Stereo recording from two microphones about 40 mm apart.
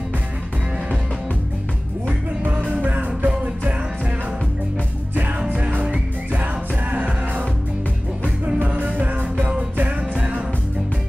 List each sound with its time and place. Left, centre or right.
2.0 s music: right
5.6 s music: right
8.6 s music: right